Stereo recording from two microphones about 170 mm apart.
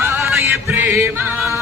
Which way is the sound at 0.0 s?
15° right (ahead or behind).